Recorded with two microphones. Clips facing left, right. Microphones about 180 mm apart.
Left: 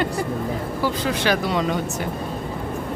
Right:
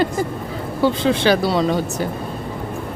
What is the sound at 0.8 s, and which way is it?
Speech, 25° right (ahead or behind).